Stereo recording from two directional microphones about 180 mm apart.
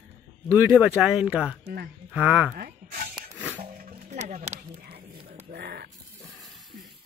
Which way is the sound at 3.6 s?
50° right (ahead or behind).